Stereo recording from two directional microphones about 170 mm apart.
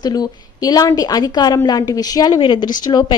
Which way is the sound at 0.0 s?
25° left (ahead or behind).